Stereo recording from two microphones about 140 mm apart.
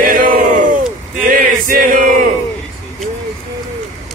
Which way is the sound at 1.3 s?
85° right.